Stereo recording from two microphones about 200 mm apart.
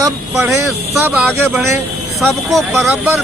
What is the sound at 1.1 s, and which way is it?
Speech, 5° right (ahead or behind).